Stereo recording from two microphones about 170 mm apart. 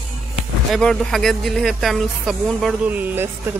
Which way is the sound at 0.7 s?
Centre (ahead or behind).